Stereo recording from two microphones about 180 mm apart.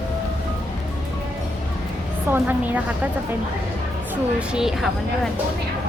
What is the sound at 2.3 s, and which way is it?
Speech, 10° right (ahead or behind).